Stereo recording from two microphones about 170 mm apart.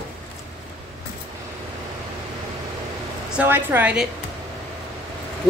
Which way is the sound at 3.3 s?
10° right (ahead or behind).